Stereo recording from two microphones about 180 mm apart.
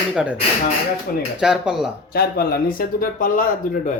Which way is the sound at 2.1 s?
60° left (ahead or behind).